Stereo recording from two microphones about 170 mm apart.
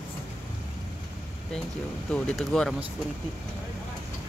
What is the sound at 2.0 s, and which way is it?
Speech, 5° left (ahead or behind).